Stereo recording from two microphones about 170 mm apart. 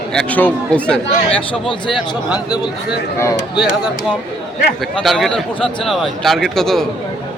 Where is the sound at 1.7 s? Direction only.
25° left (ahead or behind).